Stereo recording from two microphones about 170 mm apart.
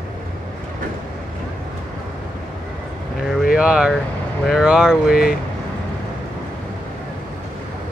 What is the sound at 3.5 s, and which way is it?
Speech, 5° right (ahead or behind).